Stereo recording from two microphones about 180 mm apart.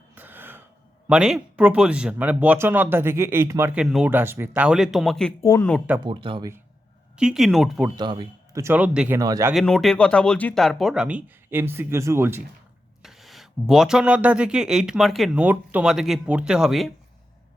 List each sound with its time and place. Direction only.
0.2 s throat clearing: 10° right (ahead or behind)
1.0 s speech: 5° right (ahead or behind)
5.4 s speech: 15° left (ahead or behind)
6.0 s speech: 30° right (ahead or behind)
7.2 s speech: centre (ahead or behind)
7.9 s speech: 25° right (ahead or behind)
8.6 s speech: 10° right (ahead or behind)
9.1 s speech: 15° right (ahead or behind)
9.5 s speech: centre (ahead or behind)
13.0 s speech: centre (ahead or behind)